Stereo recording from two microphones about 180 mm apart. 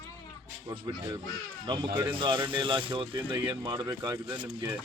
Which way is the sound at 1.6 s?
25° right (ahead or behind).